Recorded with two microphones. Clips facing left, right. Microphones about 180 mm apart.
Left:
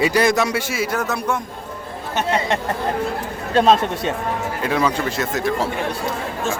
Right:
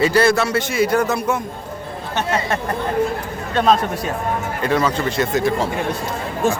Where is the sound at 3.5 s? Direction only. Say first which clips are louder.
Left 1 dB; 30° left (ahead or behind).